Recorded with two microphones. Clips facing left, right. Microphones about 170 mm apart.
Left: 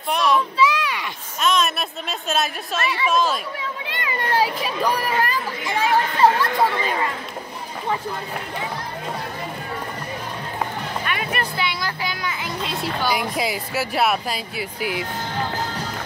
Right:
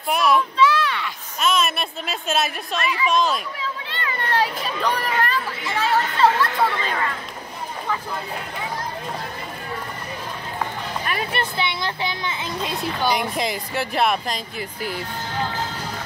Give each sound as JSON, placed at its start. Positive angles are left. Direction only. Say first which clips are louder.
{"t": 0.1, "sound": "speech", "louder": "right 1 dB", "side_deg": -5}
{"t": 0.6, "sound": "a sound", "louder": "right 1 dB", "side_deg": 10}
{"t": 1.4, "sound": "speech", "louder": "left 1 dB", "side_deg": -5}
{"t": 3.8, "sound": "speech", "louder": "left 2 dB", "side_deg": 15}
{"t": 11.1, "sound": "music", "louder": "right 2 dB", "side_deg": -35}
{"t": 11.5, "sound": "speech", "louder": "right 1 dB", "side_deg": -25}
{"t": 13.1, "sound": "speech", "louder": "even", "side_deg": 5}